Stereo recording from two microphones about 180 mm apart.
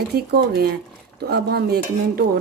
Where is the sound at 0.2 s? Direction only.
60° right (ahead or behind).